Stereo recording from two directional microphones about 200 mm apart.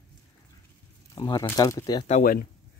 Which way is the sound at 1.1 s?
20° left (ahead or behind).